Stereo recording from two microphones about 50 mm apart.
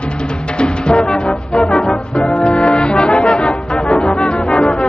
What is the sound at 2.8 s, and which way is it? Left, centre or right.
Music, centre.